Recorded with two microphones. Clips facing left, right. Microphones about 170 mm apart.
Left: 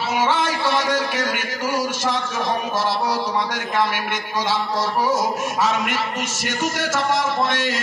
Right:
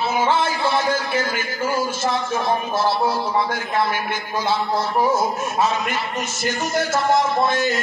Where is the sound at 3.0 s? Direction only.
90° left.